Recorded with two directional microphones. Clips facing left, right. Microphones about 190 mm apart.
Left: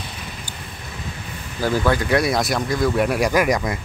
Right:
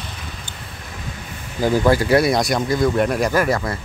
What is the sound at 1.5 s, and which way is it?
Speech, 15° right (ahead or behind).